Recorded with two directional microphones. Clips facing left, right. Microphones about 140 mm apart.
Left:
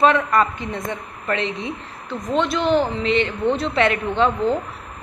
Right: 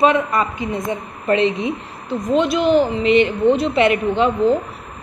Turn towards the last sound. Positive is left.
turn(degrees=-10)  # may be behind; listen again after turning